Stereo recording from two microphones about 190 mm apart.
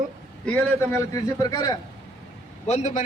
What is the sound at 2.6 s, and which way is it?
Speech, 35° left (ahead or behind).